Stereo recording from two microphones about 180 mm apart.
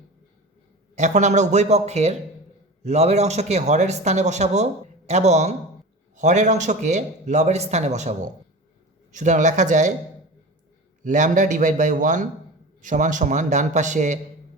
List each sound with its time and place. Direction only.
0.9 s speech: 40° right (ahead or behind)
9.1 s a man's voice: 45° right (ahead or behind)
11.0 s a man's voice: 45° right (ahead or behind)